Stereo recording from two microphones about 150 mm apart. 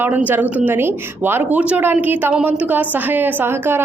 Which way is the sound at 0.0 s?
10° right (ahead or behind).